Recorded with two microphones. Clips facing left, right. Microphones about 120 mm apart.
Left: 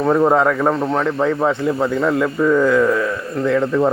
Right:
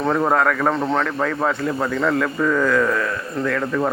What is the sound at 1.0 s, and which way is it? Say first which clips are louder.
A man's voice: left 4 dB; 20° left (ahead or behind).